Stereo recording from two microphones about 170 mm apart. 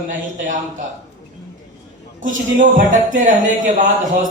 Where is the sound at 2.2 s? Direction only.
50° right (ahead or behind).